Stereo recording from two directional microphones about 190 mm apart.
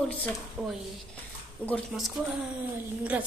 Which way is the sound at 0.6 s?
5° right (ahead or behind).